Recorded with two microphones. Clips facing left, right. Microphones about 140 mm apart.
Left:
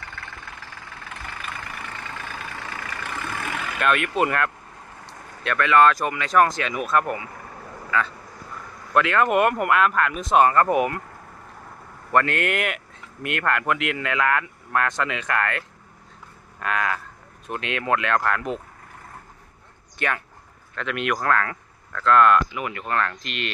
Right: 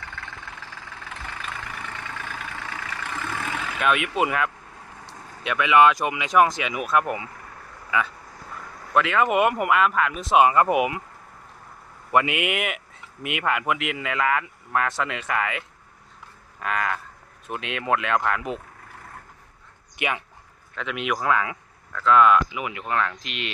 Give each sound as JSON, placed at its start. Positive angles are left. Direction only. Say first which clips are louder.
{"t": 0.2, "sound": "vehicle", "louder": "even", "side_deg": 0}
{"t": 1.5, "sound": "vehicle", "louder": "even", "side_deg": -10}
{"t": 3.3, "sound": "vehicle", "louder": "even", "side_deg": 0}
{"t": 5.4, "sound": "speech", "louder": "even", "side_deg": -10}
{"t": 8.9, "sound": "speech", "louder": "left 1 dB", "side_deg": 0}
{"t": 12.1, "sound": "speech", "louder": "left 1 dB", "side_deg": -10}
{"t": 20.0, "sound": "speech", "louder": "left 1 dB", "side_deg": -15}
{"t": 20.7, "sound": "speech", "louder": "left 2 dB", "side_deg": 0}